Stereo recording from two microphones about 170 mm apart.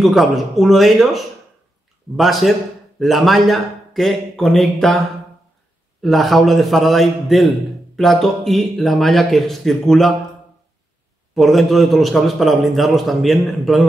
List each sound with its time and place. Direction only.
0.0 s a man's voice: centre (ahead or behind)
6.0 s a man's voice: centre (ahead or behind)
11.3 s a man's voice: centre (ahead or behind)